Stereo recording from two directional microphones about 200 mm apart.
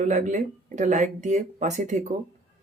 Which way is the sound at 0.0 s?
40° right (ahead or behind).